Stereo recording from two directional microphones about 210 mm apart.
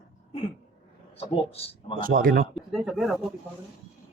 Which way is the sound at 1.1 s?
25° left (ahead or behind).